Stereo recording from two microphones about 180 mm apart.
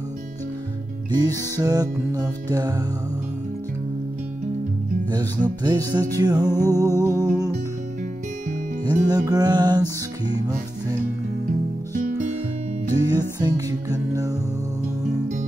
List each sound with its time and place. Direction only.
1.1 s music: 20° right (ahead or behind)
5.1 s music: 20° right (ahead or behind)
8.8 s music: 20° right (ahead or behind)
12.9 s music: 20° right (ahead or behind)